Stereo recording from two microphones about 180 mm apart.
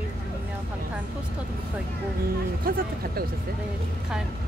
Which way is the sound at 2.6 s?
55° right (ahead or behind).